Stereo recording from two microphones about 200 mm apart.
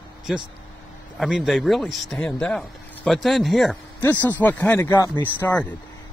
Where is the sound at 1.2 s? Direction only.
Centre (ahead or behind).